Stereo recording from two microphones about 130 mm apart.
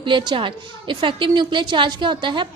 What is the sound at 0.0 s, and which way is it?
A woman's voice, 35° right (ahead or behind).